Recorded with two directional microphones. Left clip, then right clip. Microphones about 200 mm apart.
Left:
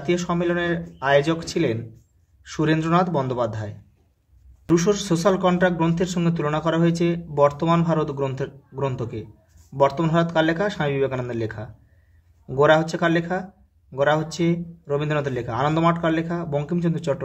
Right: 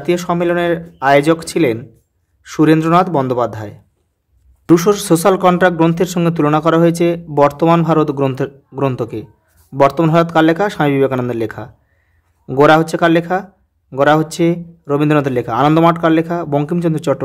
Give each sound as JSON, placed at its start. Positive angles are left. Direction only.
{"t": 0.0, "sound": "speech", "side_deg": -40}